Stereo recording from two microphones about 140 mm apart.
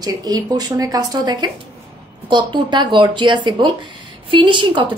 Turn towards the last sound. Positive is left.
turn(degrees=-35)  # may be behind; listen again after turning